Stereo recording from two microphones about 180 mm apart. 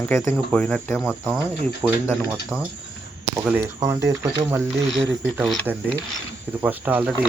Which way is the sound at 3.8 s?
15° right (ahead or behind).